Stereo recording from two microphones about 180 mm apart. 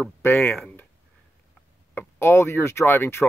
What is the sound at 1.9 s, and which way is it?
Speech, 10° left (ahead or behind).